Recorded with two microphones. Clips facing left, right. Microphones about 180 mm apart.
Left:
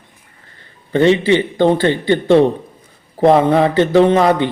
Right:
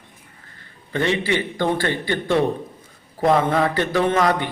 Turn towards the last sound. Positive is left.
turn(degrees=25)  # may be behind; listen again after turning